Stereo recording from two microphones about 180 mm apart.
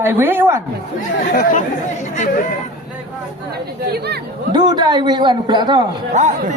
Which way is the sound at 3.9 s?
65° right (ahead or behind).